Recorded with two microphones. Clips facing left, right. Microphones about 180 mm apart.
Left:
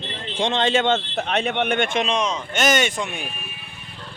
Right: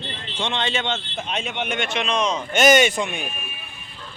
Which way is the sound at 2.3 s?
10° right (ahead or behind).